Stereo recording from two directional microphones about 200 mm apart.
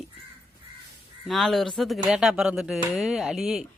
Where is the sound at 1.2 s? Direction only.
Centre (ahead or behind).